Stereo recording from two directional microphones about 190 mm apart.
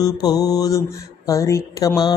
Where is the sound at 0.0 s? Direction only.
20° left (ahead or behind).